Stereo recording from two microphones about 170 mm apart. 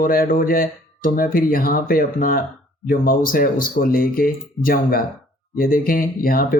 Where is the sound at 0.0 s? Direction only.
55° left (ahead or behind).